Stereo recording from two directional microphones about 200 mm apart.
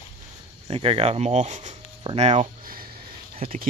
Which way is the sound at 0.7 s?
30° right (ahead or behind).